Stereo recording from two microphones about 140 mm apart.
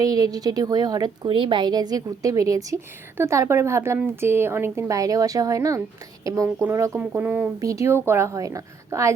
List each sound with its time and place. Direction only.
0.0 s a woman's voice: 25° right (ahead or behind)
7.6 s a woman's voice: 25° right (ahead or behind)